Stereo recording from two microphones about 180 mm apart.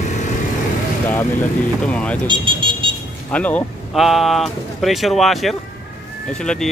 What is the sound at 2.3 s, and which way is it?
Speech, 25° right (ahead or behind).